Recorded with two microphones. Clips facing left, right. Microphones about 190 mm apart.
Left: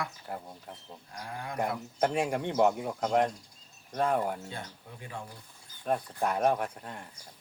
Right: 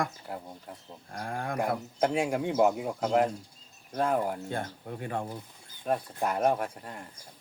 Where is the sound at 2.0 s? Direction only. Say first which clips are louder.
Right 1 dB; 5° right (ahead or behind).